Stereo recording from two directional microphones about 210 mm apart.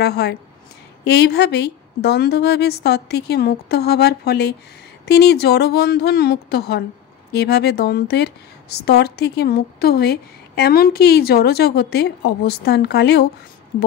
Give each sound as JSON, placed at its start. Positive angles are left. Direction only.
{"t": 0.0, "sound": "speech", "side_deg": 50}